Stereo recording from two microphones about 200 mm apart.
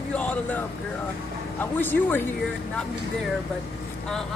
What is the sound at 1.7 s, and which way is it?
Speech, 10° left (ahead or behind).